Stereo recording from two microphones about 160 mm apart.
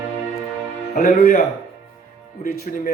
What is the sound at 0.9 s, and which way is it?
Speech, 65° left (ahead or behind).